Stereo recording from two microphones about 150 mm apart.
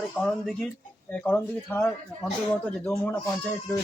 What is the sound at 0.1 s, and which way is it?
Speech, 5° left (ahead or behind).